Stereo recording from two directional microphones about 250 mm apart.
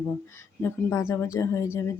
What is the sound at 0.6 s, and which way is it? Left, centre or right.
Speech, centre.